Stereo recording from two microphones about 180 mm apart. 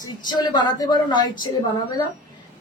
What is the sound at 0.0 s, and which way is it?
A woman's voice, 25° left (ahead or behind).